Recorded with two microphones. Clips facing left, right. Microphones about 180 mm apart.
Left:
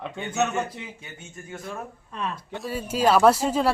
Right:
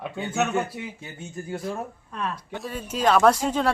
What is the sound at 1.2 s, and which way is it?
Speech, 35° right (ahead or behind).